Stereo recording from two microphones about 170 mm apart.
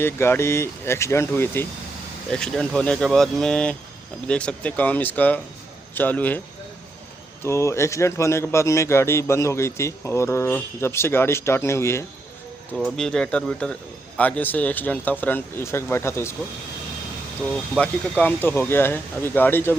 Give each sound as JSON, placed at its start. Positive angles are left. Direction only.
{"t": 0.0, "sound": "speech", "side_deg": 15}
{"t": 7.4, "sound": "speech", "side_deg": 15}
{"t": 12.7, "sound": "speech", "side_deg": 0}
{"t": 17.4, "sound": "speech", "side_deg": 5}